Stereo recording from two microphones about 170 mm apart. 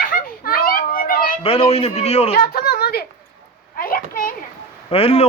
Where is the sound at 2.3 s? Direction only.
65° left (ahead or behind).